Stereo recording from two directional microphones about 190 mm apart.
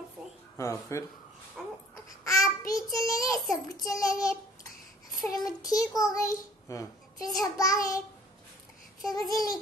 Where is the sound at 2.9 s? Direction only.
20° left (ahead or behind).